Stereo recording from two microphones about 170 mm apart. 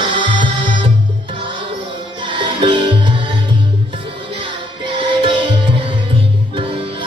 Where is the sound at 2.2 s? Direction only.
30° right (ahead or behind).